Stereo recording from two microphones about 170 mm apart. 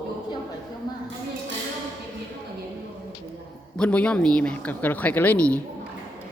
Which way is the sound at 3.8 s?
5° left (ahead or behind).